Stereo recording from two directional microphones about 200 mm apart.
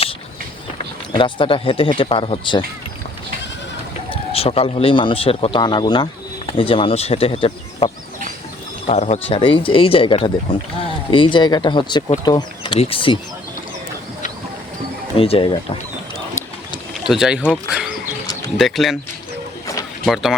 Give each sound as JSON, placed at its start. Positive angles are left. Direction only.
{"t": 1.1, "sound": "speech", "side_deg": 25}
{"t": 4.1, "sound": "speech", "side_deg": 30}
{"t": 8.9, "sound": "speech", "side_deg": 30}
{"t": 15.1, "sound": "speech", "side_deg": 30}
{"t": 17.1, "sound": "speech", "side_deg": -5}